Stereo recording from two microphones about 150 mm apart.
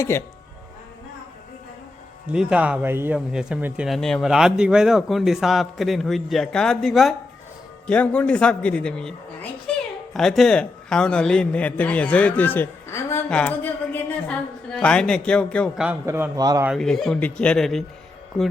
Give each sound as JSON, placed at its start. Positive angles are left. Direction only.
{"t": 0.0, "sound": "a man's voice", "side_deg": 15}
{"t": 2.3, "sound": "a man's voice", "side_deg": -5}
{"t": 9.7, "sound": "a sound", "side_deg": 5}
{"t": 10.2, "sound": "a man's voice", "side_deg": 5}
{"t": 16.0, "sound": "a man's voice", "side_deg": -20}
{"t": 16.7, "sound": "speech", "side_deg": 5}